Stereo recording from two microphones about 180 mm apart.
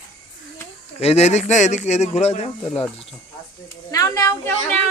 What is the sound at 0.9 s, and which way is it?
Speech, 35° left (ahead or behind).